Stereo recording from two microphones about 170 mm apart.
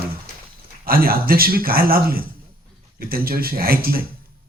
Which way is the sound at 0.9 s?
60° right (ahead or behind).